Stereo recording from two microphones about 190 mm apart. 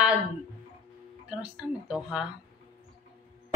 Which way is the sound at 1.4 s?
5° right (ahead or behind).